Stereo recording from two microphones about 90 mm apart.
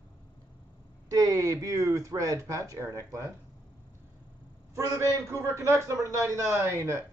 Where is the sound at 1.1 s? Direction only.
40° right (ahead or behind).